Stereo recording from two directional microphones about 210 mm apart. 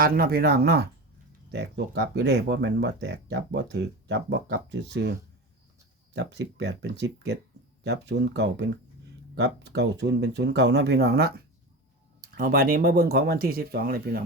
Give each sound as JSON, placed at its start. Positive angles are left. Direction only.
{"t": 0.0, "sound": "speech", "side_deg": -45}
{"t": 6.1, "sound": "speech", "side_deg": -55}